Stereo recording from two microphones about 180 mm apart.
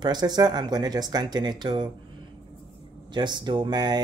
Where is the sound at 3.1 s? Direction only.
25° right (ahead or behind).